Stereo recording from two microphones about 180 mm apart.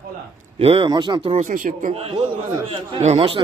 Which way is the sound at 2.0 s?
35° right (ahead or behind).